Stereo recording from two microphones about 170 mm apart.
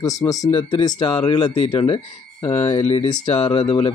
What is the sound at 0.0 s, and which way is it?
Speech, 20° left (ahead or behind).